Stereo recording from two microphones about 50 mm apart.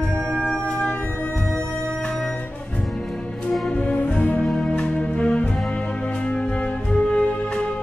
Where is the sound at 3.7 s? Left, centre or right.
Left.